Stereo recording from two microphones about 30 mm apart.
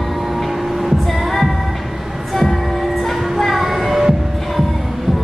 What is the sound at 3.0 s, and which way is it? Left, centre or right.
Music, centre.